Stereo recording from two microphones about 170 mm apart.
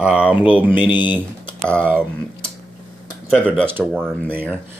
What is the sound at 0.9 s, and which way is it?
Speech, 25° left (ahead or behind).